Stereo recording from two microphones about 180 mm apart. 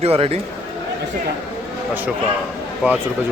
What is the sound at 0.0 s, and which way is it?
Speech, 35° right (ahead or behind).